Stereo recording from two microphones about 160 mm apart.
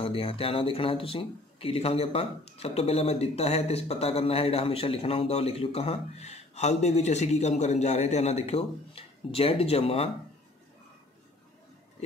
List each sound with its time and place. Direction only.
0.0 s speech: 35° left (ahead or behind)